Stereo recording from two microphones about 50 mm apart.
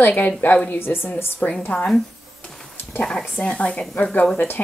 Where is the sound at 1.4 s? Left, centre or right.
Left.